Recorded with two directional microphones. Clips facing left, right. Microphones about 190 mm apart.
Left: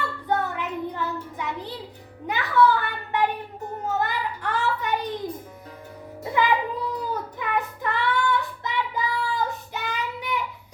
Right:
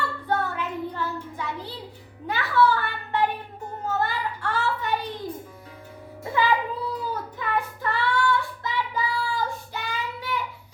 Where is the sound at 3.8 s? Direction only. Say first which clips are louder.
Even; 15° left (ahead or behind).